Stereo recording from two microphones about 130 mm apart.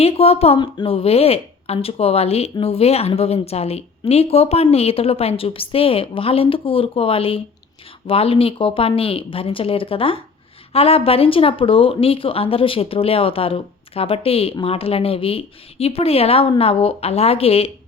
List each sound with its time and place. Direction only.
0.0 s a woman's voice: 50° left (ahead or behind)